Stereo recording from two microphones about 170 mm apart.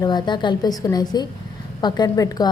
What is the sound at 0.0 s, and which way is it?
A woman's voice, 25° left (ahead or behind).